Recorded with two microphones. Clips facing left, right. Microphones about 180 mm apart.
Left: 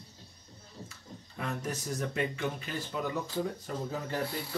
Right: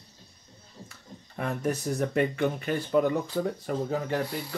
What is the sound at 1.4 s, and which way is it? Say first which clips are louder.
Speech: right 7 dB; 60° right (ahead or behind).